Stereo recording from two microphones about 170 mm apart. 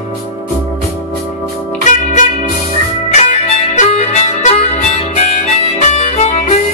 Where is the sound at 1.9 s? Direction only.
45° left (ahead or behind).